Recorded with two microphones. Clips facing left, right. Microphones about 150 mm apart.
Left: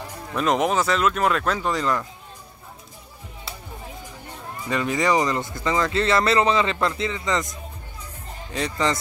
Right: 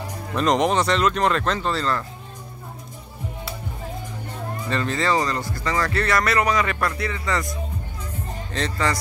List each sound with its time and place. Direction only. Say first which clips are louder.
0.3 s speech: right 1 dB; 5° left (ahead or behind)
4.6 s speech: left 2 dB; 10° left (ahead or behind)
8.5 s speech: left 1 dB; 15° left (ahead or behind)